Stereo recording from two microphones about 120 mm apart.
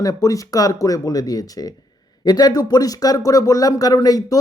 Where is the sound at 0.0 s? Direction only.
30° left (ahead or behind).